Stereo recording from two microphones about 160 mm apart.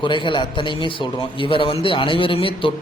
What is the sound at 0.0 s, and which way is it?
Speech, 30° left (ahead or behind).